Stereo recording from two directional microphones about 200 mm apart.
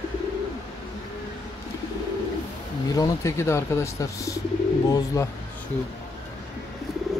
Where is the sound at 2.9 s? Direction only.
15° left (ahead or behind).